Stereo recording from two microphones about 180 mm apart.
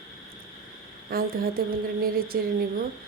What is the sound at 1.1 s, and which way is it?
Speech, 55° right (ahead or behind).